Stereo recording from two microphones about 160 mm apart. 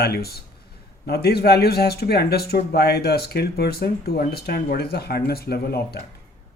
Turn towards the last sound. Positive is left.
turn(degrees=80)